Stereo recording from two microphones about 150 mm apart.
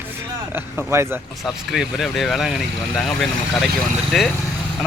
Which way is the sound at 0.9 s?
15° right (ahead or behind).